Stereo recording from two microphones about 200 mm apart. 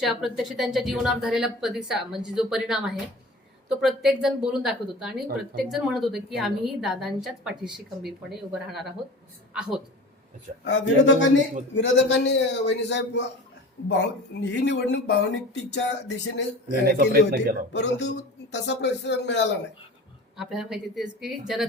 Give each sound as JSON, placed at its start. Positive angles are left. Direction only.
{"t": 0.0, "sound": "a woman's voice", "side_deg": 0}
{"t": 10.6, "sound": "speech", "side_deg": 65}
{"t": 16.9, "sound": "a man's voice", "side_deg": -50}
{"t": 17.7, "sound": "speech", "side_deg": 60}
{"t": 20.3, "sound": "a woman's voice", "side_deg": 0}